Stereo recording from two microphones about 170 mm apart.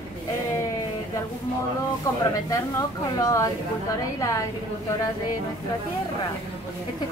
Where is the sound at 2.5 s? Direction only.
20° left (ahead or behind).